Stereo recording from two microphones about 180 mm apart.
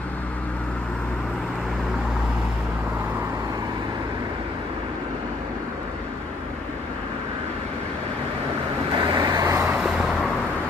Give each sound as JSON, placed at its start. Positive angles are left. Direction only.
{"t": 8.9, "sound": "vehicle", "side_deg": -25}
{"t": 9.8, "sound": "vehicle", "side_deg": -5}